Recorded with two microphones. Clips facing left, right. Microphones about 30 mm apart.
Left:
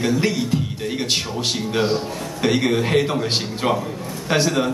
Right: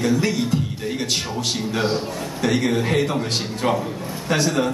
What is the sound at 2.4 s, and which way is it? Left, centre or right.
Speech, left.